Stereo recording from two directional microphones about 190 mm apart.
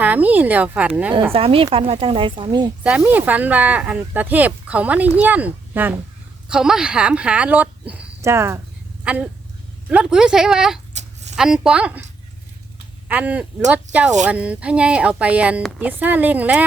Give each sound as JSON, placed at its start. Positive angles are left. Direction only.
{"t": 0.0, "sound": "speech", "side_deg": -10}
{"t": 1.3, "sound": "a woman's voice", "side_deg": -30}
{"t": 2.8, "sound": "speech", "side_deg": -10}
{"t": 10.9, "sound": "a sound", "side_deg": -35}
{"t": 11.3, "sound": "speech", "side_deg": -5}
{"t": 13.1, "sound": "speech", "side_deg": -10}